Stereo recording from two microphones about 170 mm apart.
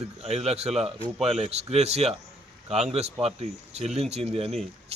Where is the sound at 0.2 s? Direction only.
40° right (ahead or behind).